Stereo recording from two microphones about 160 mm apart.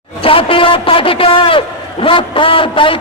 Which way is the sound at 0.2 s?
35° left (ahead or behind).